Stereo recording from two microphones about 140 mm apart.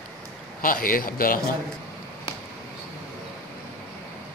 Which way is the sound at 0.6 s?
90° left.